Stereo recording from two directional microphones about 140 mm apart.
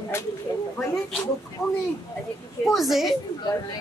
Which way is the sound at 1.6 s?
20° left (ahead or behind).